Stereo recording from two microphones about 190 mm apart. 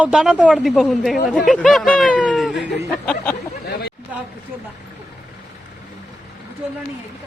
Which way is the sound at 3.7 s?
60° left (ahead or behind).